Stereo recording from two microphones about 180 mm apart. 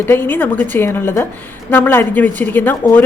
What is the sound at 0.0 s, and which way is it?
A woman's voice, 10° left (ahead or behind).